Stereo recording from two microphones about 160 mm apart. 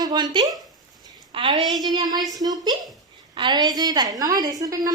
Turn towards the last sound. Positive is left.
turn(degrees=-20)  # may be behind; listen again after turning